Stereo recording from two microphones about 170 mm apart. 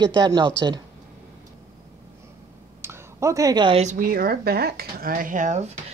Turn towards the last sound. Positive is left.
turn(degrees=-45)  # may be behind; listen again after turning